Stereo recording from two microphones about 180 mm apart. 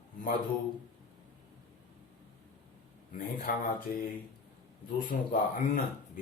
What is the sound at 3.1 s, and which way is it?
Speech, 50° left (ahead or behind).